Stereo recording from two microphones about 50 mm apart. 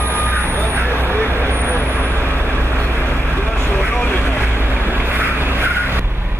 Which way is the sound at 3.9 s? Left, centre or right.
Left.